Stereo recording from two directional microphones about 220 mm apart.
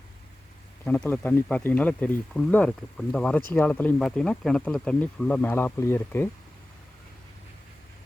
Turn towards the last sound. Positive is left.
turn(degrees=10)  # may be behind; listen again after turning